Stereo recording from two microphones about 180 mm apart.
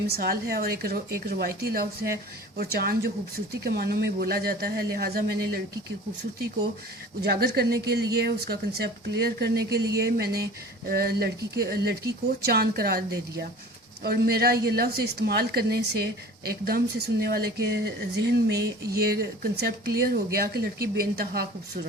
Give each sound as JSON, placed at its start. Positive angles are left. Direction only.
{"t": 0.1, "sound": "a woman's voice", "side_deg": -55}
{"t": 7.2, "sound": "a woman's voice", "side_deg": -65}